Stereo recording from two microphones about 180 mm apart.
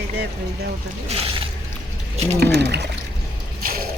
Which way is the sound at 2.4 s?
65° right (ahead or behind).